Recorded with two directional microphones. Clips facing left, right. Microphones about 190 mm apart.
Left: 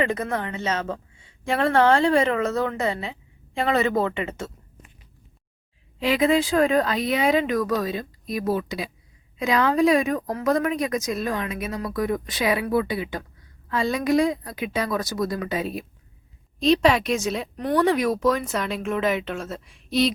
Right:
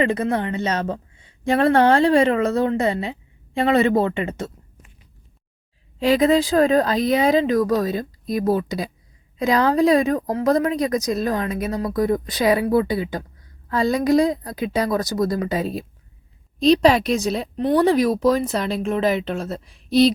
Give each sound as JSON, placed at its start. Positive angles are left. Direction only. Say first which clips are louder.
{"t": 0.0, "sound": "a woman's voice", "louder": "right 4 dB", "side_deg": -30}
{"t": 6.0, "sound": "a woman's voice", "louder": "right 4 dB", "side_deg": -40}